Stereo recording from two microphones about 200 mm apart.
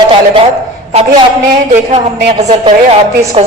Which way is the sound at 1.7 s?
35° right (ahead or behind).